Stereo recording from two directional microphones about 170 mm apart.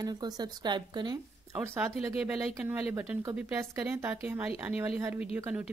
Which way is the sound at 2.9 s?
10° right (ahead or behind).